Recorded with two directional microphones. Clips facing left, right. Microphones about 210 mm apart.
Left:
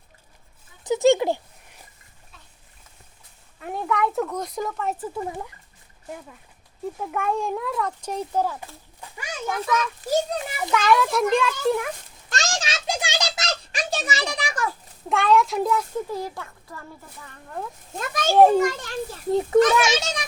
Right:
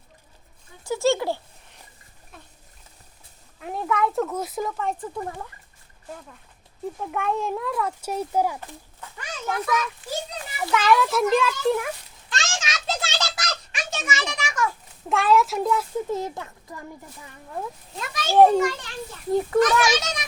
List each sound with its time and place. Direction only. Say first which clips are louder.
0.9 s speech: left 4 dB; 20° left (ahead or behind)
3.6 s speech: even; centre (ahead or behind)
8.6 s a sound: right 1 dB; 10° left (ahead or behind)
10.0 s a child's voice: left 9 dB; 40° left (ahead or behind)
10.7 s speech: even; centre (ahead or behind)
12.3 s a sound: left 3 dB; 40° left (ahead or behind)
12.9 s a sound: left 1 dB; 15° left (ahead or behind); by 14.7 s 35° left (ahead or behind)
15.1 s speech: even; centre (ahead or behind)
16.0 s a child's voice: right 2 dB; 20° right (ahead or behind)
17.9 s a child's voice: left 6 dB; 45° left (ahead or behind)
18.3 s speech: even; centre (ahead or behind)
18.6 s a child's voice: left 1 dB; 45° left (ahead or behind)
19.3 s a child's voice: left 2 dB; 25° left (ahead or behind)